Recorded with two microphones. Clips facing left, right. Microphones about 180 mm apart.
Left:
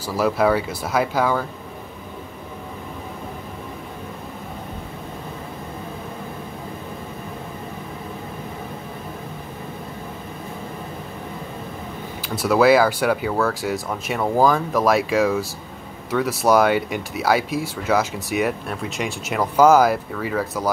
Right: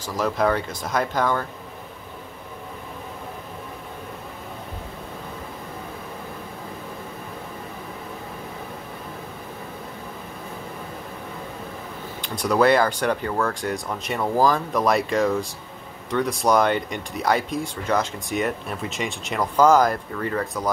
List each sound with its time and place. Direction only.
0.0 s speech: 10° left (ahead or behind)
12.2 s speech: 5° left (ahead or behind)